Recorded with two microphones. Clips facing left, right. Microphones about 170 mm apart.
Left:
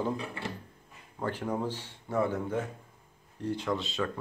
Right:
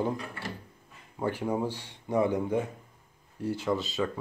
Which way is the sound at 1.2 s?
10° right (ahead or behind).